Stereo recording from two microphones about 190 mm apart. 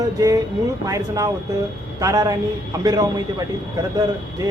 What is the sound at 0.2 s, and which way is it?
A man's voice, 20° right (ahead or behind).